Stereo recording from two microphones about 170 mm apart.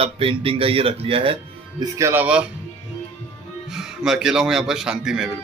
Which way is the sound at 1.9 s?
15° right (ahead or behind).